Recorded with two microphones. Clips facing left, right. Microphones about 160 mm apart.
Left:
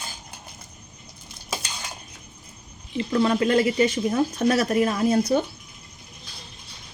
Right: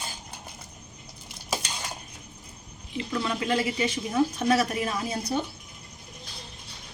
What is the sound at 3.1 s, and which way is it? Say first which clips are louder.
Speech: left 7 dB; 45° left (ahead or behind).